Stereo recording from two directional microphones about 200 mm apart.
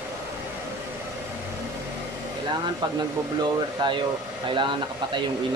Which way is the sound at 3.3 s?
25° right (ahead or behind).